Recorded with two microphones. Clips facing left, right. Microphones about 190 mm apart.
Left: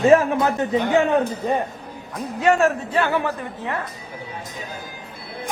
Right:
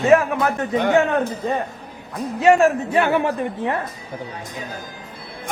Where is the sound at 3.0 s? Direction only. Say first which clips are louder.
Right 3 dB; 20° right (ahead or behind).